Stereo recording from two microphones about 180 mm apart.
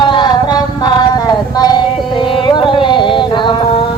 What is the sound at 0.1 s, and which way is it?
Music, 25° left (ahead or behind).